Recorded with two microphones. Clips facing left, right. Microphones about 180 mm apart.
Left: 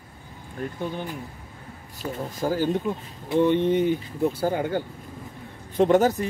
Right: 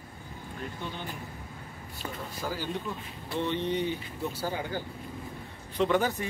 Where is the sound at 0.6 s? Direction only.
50° left (ahead or behind).